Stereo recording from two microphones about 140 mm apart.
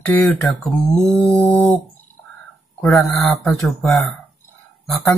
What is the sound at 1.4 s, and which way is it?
Speech, 15° left (ahead or behind).